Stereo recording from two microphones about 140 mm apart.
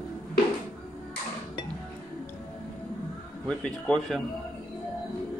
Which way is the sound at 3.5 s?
5° left (ahead or behind).